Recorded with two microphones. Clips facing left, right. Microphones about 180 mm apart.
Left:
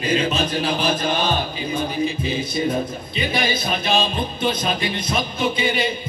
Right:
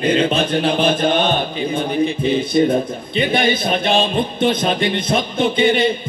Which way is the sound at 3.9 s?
25° right (ahead or behind).